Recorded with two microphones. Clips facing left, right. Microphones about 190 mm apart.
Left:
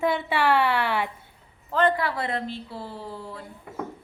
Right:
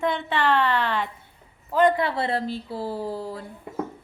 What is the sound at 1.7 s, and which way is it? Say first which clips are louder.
A woman's voice: right 3 dB; 20° right (ahead or behind).